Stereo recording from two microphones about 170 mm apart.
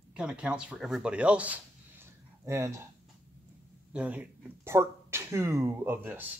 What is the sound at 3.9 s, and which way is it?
Speech, 10° right (ahead or behind).